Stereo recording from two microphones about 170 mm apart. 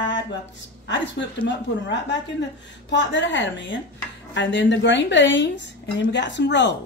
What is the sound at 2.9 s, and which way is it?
Speech, 90° left.